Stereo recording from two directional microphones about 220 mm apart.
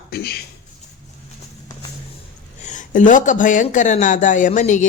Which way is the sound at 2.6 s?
35° left (ahead or behind).